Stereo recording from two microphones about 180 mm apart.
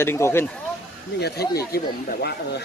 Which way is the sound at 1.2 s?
65° left (ahead or behind).